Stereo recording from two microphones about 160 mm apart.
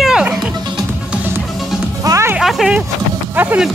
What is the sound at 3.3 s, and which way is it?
Music, 10° right (ahead or behind).